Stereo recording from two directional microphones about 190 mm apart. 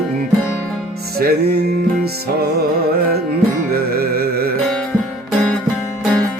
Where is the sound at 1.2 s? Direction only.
55° right (ahead or behind).